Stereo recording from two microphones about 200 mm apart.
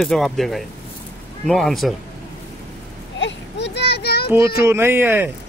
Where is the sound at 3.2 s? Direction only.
60° left (ahead or behind).